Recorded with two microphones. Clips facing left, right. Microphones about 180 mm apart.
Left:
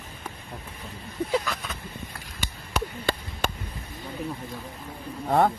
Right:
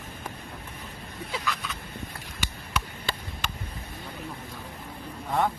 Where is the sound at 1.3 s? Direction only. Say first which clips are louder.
Left 5 dB; 45° left (ahead or behind).